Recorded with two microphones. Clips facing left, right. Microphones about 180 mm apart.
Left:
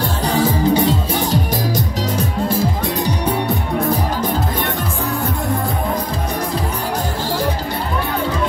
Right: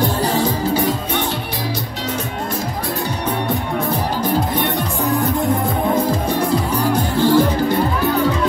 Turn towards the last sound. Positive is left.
turn(degrees=-55)  # may be behind; listen again after turning